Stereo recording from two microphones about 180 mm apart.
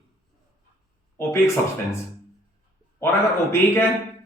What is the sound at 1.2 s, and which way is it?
Speech, 15° left (ahead or behind).